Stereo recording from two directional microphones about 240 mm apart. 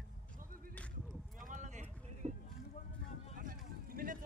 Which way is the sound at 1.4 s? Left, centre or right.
Right.